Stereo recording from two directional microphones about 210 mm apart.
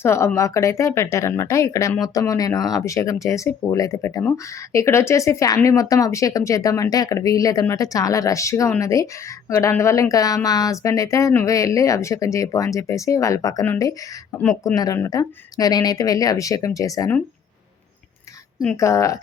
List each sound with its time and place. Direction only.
0.0 s speech: 10° left (ahead or behind)
18.6 s speech: 10° left (ahead or behind)